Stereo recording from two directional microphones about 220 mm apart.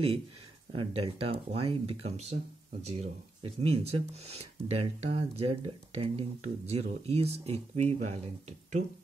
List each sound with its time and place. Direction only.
0.7 s speech: 25° right (ahead or behind)